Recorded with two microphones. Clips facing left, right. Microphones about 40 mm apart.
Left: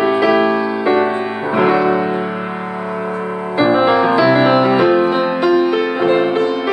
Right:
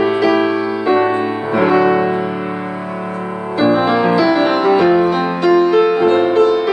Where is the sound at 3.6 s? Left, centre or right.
Centre.